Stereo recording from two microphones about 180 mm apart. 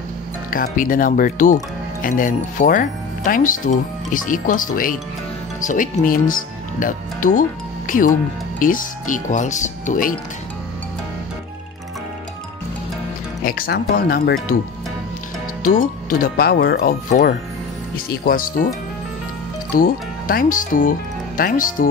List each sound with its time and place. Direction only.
0.5 s speech: 50° left (ahead or behind)
13.4 s speech: 55° left (ahead or behind)
15.6 s speech: 50° left (ahead or behind)
17.9 s speech: 50° left (ahead or behind)
19.7 s speech: 55° left (ahead or behind)